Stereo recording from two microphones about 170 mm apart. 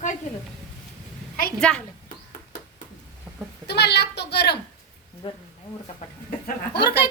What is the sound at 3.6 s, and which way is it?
Speech, 75° left (ahead or behind).